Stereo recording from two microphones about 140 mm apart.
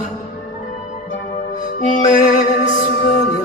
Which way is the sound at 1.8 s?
55° left (ahead or behind).